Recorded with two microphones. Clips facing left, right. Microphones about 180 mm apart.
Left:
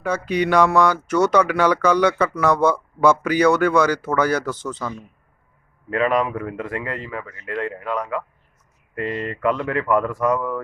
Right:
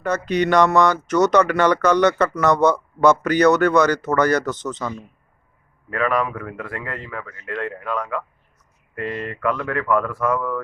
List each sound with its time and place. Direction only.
0.0 s speech: 10° left (ahead or behind)
5.9 s speech: 20° left (ahead or behind)